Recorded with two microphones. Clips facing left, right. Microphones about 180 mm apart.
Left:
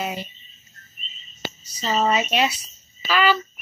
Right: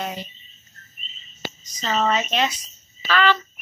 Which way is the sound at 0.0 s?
10° left (ahead or behind).